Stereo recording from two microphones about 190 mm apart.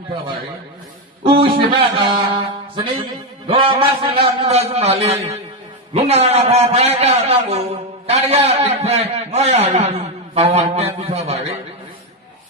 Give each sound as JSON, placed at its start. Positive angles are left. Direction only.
{"t": 1.2, "sound": "a man's voice", "side_deg": -30}